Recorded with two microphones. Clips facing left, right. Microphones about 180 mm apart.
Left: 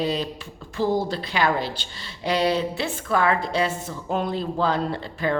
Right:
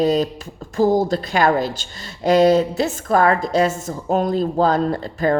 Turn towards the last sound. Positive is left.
turn(degrees=-45)  # may be behind; listen again after turning